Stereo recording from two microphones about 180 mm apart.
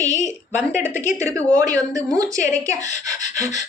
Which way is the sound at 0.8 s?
15° right (ahead or behind).